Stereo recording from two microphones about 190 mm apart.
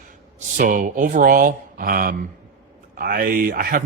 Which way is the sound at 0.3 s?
45° right (ahead or behind).